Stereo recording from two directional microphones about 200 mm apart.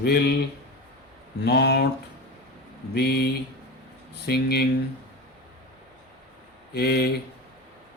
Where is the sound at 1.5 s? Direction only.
55° left (ahead or behind).